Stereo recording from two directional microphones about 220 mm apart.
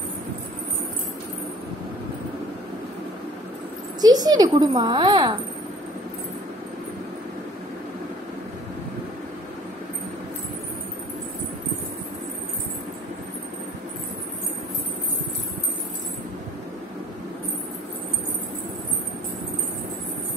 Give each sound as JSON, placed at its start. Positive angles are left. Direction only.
{"t": 4.0, "sound": "a child's voice", "side_deg": -15}